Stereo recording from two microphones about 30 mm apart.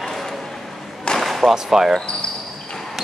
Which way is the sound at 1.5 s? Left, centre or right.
Centre.